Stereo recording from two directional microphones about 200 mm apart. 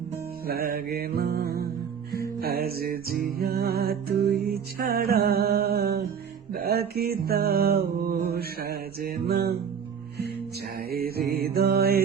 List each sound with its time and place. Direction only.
0.4 s music: 50° right (ahead or behind)
10.8 s music: 50° right (ahead or behind)